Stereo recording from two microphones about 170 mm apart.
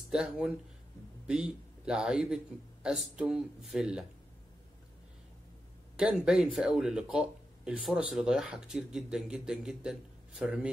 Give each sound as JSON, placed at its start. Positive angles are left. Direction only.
{"t": 0.1, "sound": "speech", "side_deg": -5}
{"t": 5.9, "sound": "speech", "side_deg": -5}